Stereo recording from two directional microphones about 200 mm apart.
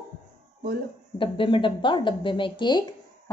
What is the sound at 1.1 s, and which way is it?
A woman's voice, 25° left (ahead or behind).